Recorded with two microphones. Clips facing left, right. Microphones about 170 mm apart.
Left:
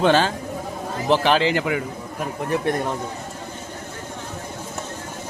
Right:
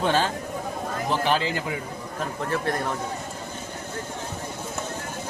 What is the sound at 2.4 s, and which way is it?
Speech, 20° left (ahead or behind).